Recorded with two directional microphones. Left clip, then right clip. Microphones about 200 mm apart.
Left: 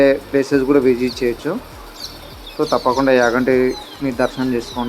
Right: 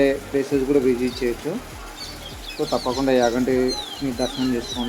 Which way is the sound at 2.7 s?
20° left (ahead or behind).